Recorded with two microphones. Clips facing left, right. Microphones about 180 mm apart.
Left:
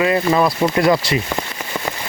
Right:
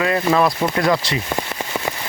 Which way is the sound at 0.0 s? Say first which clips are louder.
Left 1 dB; 5° left (ahead or behind).